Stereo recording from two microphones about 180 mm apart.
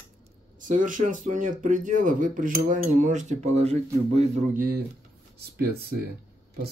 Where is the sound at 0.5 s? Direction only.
45° right (ahead or behind).